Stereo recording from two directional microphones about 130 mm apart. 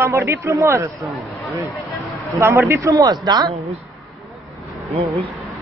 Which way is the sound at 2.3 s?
25° right (ahead or behind).